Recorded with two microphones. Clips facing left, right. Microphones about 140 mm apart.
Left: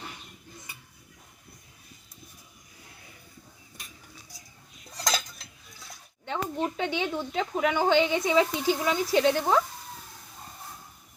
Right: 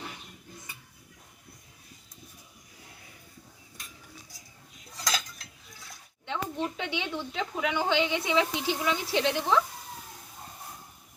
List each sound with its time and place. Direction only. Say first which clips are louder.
5.0 s cutlery: left 3 dB; 35° left (ahead or behind)
6.2 s speech: left 2 dB; 45° left (ahead or behind)